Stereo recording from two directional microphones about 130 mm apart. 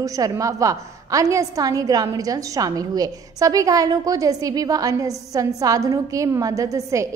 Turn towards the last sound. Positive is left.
turn(degrees=-25)  # may be behind; listen again after turning